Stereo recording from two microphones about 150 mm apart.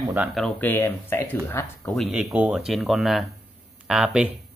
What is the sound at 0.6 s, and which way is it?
Speech, 15° left (ahead or behind).